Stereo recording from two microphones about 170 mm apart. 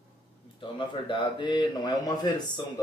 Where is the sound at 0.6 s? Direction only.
30° left (ahead or behind).